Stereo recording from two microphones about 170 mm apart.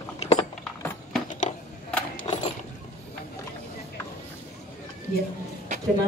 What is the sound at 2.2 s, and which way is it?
Mechanisms, 40° left (ahead or behind).